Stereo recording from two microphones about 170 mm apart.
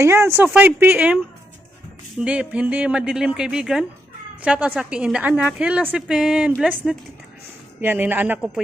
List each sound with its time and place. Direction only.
0.0 s a woman's voice: 15° right (ahead or behind)